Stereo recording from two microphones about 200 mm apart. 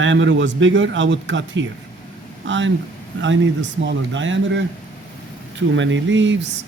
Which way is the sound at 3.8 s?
70° right (ahead or behind).